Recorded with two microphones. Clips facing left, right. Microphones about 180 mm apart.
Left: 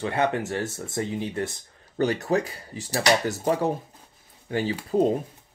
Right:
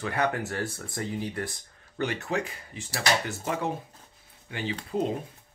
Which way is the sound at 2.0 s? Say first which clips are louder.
Left 6 dB; 35° left (ahead or behind).